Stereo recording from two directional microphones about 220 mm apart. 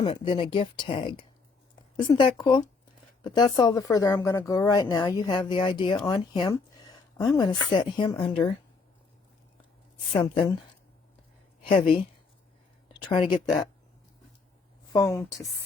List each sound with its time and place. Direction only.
0.0 s a woman's voice: 25° left (ahead or behind)
10.1 s speech: 25° left (ahead or behind)
12.9 s a sound: 20° left (ahead or behind)
14.9 s a woman's voice: 10° left (ahead or behind)